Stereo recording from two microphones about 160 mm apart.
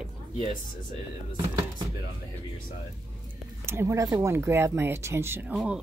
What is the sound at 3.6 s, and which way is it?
Speech, 15° right (ahead or behind).